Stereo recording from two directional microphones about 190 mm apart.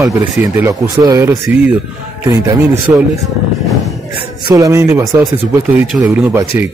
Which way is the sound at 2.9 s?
10° right (ahead or behind).